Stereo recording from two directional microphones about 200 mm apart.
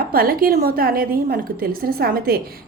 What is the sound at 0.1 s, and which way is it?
A woman's voice, 45° right (ahead or behind).